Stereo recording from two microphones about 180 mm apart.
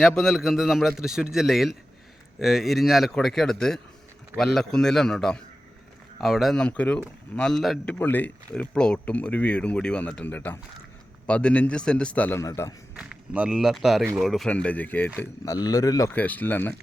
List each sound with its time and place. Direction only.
0.0 s a man's voice: centre (ahead or behind)
13.0 s a man's voice: 5° right (ahead or behind); by 15.5 s 10° left (ahead or behind)
15.5 s speech: 20° left (ahead or behind)